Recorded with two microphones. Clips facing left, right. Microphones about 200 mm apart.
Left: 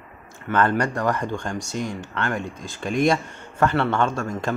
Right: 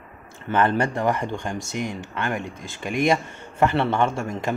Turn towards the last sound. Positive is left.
turn(degrees=-20)  # may be behind; listen again after turning